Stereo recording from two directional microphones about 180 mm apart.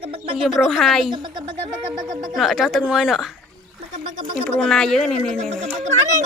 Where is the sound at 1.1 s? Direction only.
25° right (ahead or behind).